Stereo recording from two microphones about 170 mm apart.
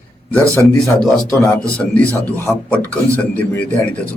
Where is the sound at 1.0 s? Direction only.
5° left (ahead or behind).